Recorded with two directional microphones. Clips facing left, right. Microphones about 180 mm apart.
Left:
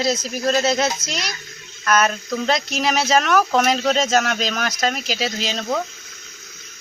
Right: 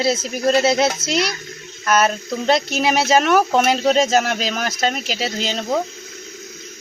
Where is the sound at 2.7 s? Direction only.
5° right (ahead or behind).